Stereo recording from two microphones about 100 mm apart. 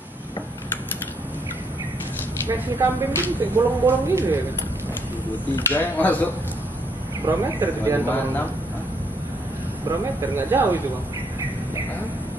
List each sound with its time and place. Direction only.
2.4 s speech: 20° right (ahead or behind)
5.5 s speech: 15° left (ahead or behind)
7.2 s speech: 20° right (ahead or behind)
10.3 s speech: 20° right (ahead or behind)